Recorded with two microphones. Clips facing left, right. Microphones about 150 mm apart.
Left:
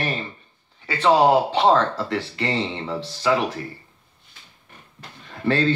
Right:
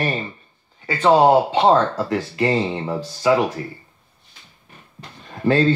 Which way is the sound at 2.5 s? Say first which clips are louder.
Right 4 dB; 40° right (ahead or behind).